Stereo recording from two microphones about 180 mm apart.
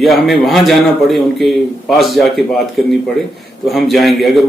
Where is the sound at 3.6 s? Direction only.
Centre (ahead or behind).